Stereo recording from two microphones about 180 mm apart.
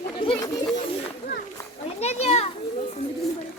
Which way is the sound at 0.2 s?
25° left (ahead or behind).